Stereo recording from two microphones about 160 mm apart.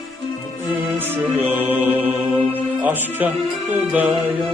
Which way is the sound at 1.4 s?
10° right (ahead or behind).